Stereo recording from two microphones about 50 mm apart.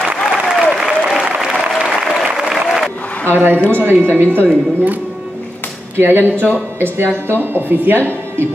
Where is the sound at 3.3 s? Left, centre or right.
Right.